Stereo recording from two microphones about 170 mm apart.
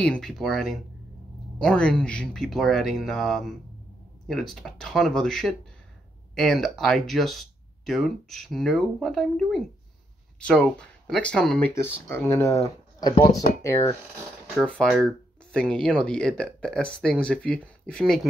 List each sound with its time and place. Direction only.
0.0 s speech: 5° left (ahead or behind)
13.6 s speech: 15° left (ahead or behind)
14.6 s speech: centre (ahead or behind)